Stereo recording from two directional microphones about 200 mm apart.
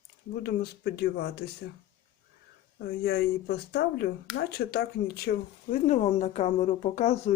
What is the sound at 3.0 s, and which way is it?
Speech, 55° left (ahead or behind).